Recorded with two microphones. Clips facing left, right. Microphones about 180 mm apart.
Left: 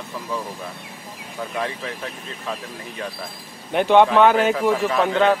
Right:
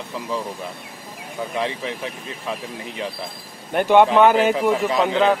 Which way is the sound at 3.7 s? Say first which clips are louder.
Even; 5° right (ahead or behind).